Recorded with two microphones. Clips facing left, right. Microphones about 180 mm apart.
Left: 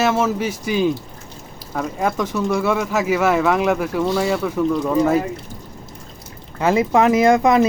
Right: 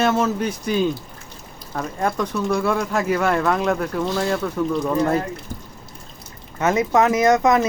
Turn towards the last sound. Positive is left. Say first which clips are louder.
# left 2 dB
turn(degrees=25)  # may be behind; listen again after turning